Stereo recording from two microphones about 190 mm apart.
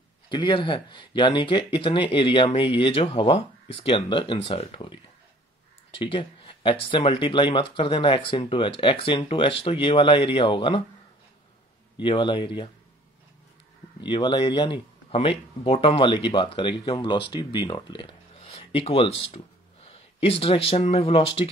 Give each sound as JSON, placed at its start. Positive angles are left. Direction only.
{"t": 0.3, "sound": "speech", "side_deg": 25}
{"t": 5.9, "sound": "speech", "side_deg": 30}
{"t": 12.0, "sound": "speech", "side_deg": 25}
{"t": 14.0, "sound": "speech", "side_deg": 25}